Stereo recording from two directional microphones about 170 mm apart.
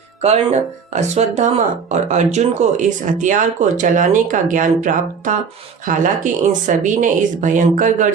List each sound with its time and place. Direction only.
0.2 s speech: 40° right (ahead or behind)
6.5 s speech: 50° right (ahead or behind)